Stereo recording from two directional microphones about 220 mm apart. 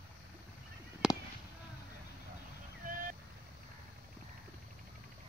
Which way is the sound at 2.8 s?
40° right (ahead or behind).